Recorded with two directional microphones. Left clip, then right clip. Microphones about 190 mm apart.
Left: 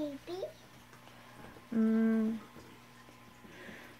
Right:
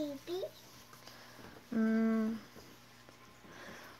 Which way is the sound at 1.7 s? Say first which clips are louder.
Left 2 dB; 10° right (ahead or behind).